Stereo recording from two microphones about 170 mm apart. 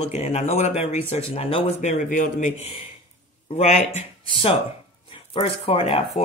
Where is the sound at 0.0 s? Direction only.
40° left (ahead or behind).